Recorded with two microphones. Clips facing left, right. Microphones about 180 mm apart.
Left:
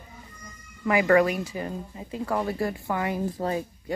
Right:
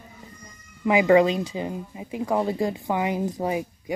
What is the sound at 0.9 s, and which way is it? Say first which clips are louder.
A woman's voice: right 3 dB; 15° right (ahead or behind).